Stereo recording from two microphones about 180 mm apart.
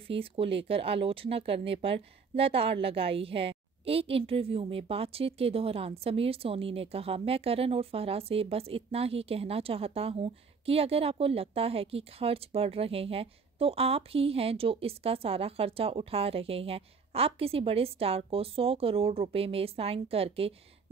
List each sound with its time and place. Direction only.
0.0 s speech: 30° right (ahead or behind)